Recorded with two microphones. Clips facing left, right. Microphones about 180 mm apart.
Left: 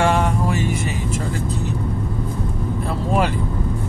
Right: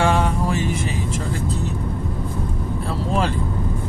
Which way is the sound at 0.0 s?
50° left (ahead or behind).